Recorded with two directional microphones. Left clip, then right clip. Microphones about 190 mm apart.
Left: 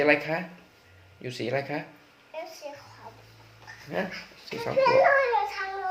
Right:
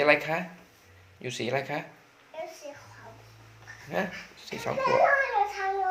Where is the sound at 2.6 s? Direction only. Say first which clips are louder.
Left 2 dB; 10° left (ahead or behind).